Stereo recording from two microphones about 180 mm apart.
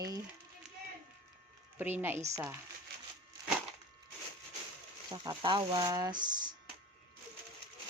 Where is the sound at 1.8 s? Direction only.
10° right (ahead or behind).